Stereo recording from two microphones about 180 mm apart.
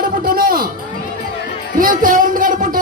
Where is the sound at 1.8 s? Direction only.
50° right (ahead or behind).